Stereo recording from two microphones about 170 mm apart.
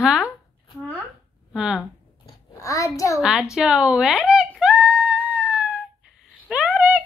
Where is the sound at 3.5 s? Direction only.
5° right (ahead or behind).